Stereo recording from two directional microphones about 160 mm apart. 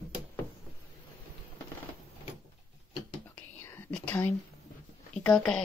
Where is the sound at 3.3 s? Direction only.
15° left (ahead or behind).